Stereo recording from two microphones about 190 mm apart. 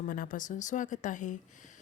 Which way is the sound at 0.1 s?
45° left (ahead or behind).